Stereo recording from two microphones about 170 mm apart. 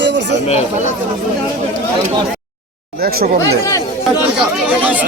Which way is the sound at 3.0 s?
65° right (ahead or behind).